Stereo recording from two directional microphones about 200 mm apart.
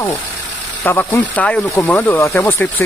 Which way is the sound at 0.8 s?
10° left (ahead or behind).